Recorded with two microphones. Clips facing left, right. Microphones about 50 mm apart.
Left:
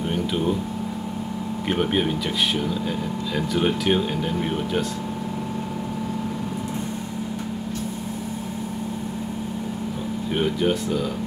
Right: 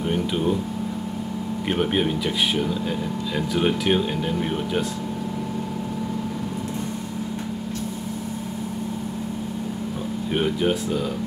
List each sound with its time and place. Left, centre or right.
0.1 s a sound: centre
1.7 s speech: centre
10.3 s speech: centre